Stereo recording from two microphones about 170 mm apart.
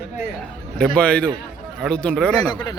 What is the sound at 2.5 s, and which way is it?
Speech, 25° left (ahead or behind).